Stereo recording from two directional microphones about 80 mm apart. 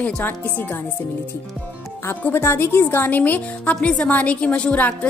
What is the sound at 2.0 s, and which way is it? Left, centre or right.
A woman's voice, left.